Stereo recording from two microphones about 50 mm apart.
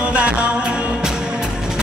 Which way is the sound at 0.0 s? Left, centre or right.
Right.